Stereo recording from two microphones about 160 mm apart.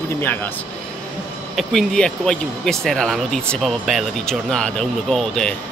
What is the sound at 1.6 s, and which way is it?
Speech, 5° left (ahead or behind).